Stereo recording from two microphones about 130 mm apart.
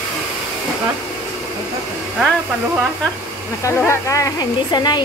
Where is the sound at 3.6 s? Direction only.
25° left (ahead or behind).